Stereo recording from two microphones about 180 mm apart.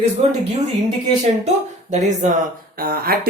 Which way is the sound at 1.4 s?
40° right (ahead or behind).